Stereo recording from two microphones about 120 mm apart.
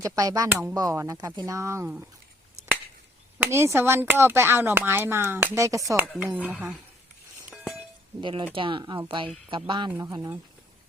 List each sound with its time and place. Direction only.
0.0 s speech: 30° right (ahead or behind)
0.4 s speech: 15° right (ahead or behind)
0.7 s speech: 25° right (ahead or behind)
3.5 s speech: 20° right (ahead or behind)
6.3 s speech: 10° right (ahead or behind)
8.2 s speech: 45° right (ahead or behind)
10.2 s speech: 20° right (ahead or behind)